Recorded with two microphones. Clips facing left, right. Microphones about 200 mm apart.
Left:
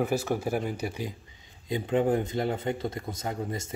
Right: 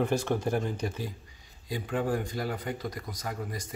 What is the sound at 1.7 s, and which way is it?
Speech, 20° left (ahead or behind).